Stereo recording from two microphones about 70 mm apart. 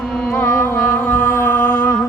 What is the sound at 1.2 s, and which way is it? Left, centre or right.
Music, left.